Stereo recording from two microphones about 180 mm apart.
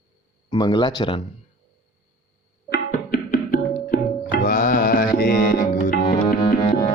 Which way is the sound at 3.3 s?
50° left (ahead or behind).